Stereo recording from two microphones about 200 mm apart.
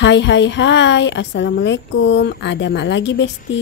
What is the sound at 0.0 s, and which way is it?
A woman's voice, 60° left (ahead or behind).